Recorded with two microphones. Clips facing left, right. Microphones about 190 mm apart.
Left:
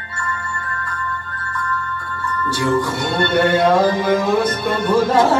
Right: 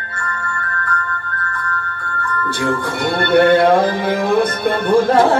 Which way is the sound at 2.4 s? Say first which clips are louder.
Left 2 dB; 55° right (ahead or behind).